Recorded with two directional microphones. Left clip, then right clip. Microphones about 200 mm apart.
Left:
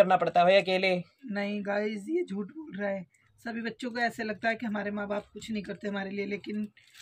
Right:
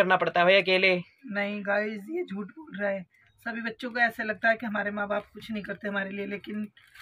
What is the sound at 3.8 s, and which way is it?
Speech, 15° left (ahead or behind).